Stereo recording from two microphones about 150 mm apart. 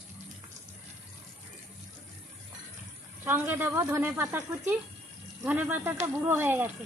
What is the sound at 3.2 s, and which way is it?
Speech, 15° right (ahead or behind).